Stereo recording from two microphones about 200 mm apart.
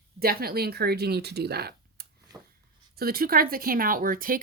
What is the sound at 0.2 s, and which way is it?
Speech, 50° right (ahead or behind).